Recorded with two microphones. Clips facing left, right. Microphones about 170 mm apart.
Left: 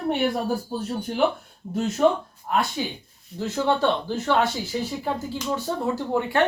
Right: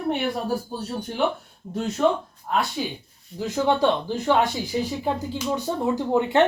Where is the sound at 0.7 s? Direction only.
Centre (ahead or behind).